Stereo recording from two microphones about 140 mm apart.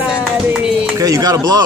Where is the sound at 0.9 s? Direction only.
25° right (ahead or behind).